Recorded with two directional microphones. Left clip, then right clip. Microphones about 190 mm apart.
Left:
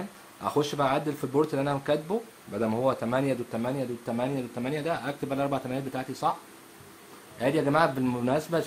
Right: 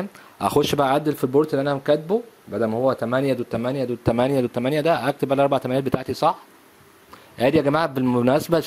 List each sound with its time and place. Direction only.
0.4 s speech: 45° right (ahead or behind)
7.3 s speech: 45° right (ahead or behind)
8.3 s speech: 45° right (ahead or behind)